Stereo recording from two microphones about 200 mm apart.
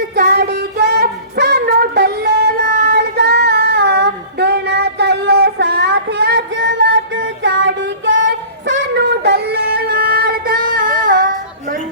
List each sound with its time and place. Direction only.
0.2 s child singing: 55° right (ahead or behind); by 8.2 s 70° right (ahead or behind)
8.3 s music: 60° right (ahead or behind); by 11.3 s 45° right (ahead or behind)